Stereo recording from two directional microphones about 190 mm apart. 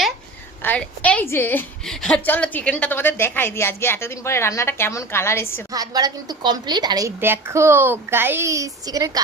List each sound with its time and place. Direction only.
0.6 s a woman's voice: 10° left (ahead or behind)
5.7 s a woman's voice: 20° right (ahead or behind)